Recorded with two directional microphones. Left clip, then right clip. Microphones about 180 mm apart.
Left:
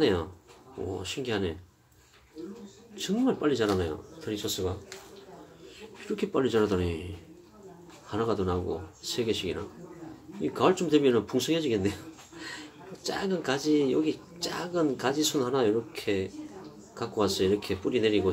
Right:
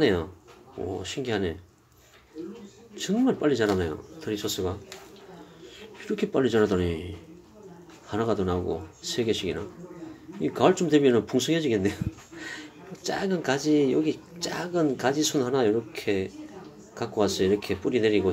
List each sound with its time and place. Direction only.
0.0 s speech: 15° right (ahead or behind)
3.0 s speech: 15° right (ahead or behind)
5.8 s a man's voice: 15° right (ahead or behind)
8.1 s speech: 15° right (ahead or behind)